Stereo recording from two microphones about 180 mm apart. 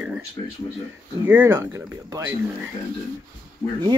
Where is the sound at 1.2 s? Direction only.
10° right (ahead or behind).